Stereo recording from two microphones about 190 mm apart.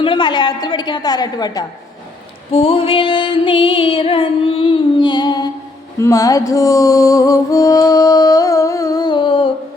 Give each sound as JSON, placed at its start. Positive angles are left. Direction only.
{"t": 0.0, "sound": "music", "side_deg": 25}